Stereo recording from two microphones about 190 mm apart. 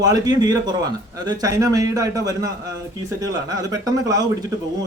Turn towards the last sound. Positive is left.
turn(degrees=-20)  # may be behind; listen again after turning